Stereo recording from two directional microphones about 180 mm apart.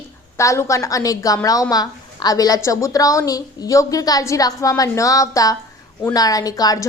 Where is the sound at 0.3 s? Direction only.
15° left (ahead or behind).